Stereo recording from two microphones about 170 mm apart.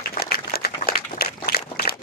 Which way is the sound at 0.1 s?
60° left (ahead or behind).